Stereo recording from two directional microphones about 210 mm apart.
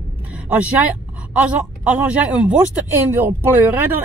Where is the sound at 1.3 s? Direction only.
5° right (ahead or behind).